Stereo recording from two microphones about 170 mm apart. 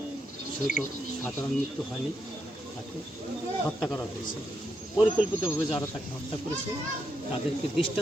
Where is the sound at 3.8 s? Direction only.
5° left (ahead or behind).